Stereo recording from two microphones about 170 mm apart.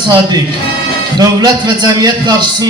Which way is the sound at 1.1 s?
25° right (ahead or behind).